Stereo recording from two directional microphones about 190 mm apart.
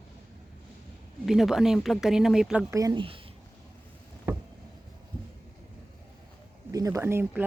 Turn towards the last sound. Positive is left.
turn(degrees=-10)  # may be behind; listen again after turning